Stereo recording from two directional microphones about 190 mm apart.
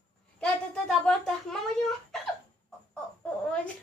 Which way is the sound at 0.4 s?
Centre (ahead or behind).